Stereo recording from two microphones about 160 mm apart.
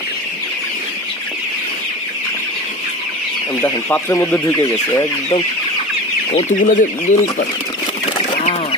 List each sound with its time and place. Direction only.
3.6 s speech: 15° left (ahead or behind)
6.3 s speech: 55° left (ahead or behind)